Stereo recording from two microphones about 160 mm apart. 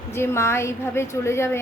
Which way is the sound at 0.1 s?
15° left (ahead or behind).